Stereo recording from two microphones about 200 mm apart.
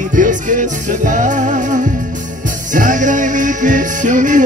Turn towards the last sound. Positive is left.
turn(degrees=-40)  # may be behind; listen again after turning